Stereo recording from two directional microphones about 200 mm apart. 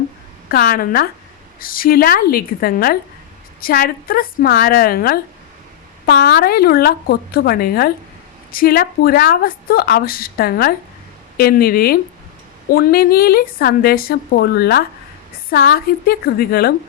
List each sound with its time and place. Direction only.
0.5 s a woman's voice: 45° left (ahead or behind)